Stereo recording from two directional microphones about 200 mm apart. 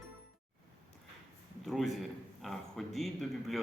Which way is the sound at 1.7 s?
Centre (ahead or behind).